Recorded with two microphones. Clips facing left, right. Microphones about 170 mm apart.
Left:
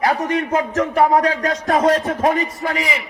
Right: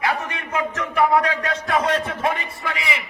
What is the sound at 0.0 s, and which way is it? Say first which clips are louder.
A man's voice: left 7 dB; 40° left (ahead or behind).